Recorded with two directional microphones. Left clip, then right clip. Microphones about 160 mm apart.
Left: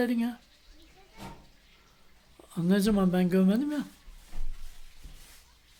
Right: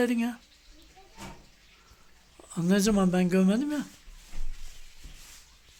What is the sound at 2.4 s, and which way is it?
Speech, 5° left (ahead or behind).